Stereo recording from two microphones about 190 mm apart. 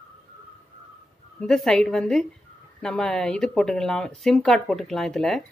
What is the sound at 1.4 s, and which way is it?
Speech, centre (ahead or behind).